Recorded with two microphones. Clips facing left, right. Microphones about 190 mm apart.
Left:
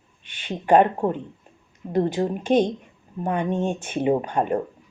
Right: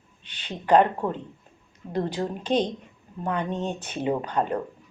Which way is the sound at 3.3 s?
10° left (ahead or behind).